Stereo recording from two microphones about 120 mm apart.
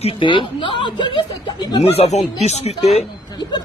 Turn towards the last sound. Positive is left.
turn(degrees=35)  # may be behind; listen again after turning